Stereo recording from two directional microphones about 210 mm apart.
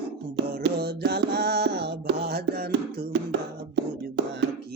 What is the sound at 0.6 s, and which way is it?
Music, 50° right (ahead or behind).